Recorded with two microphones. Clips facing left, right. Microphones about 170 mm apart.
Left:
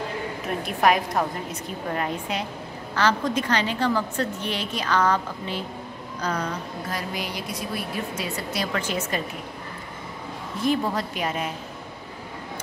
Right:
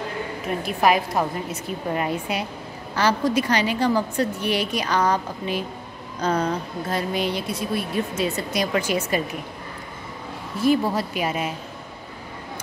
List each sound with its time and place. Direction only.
0.7 s a woman's voice: 5° right (ahead or behind)
6.2 s speech: 30° right (ahead or behind)
8.2 s a woman's voice: 15° right (ahead or behind)
10.6 s a woman's voice: 5° right (ahead or behind)